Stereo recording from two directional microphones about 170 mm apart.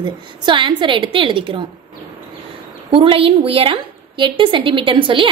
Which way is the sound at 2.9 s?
30° right (ahead or behind).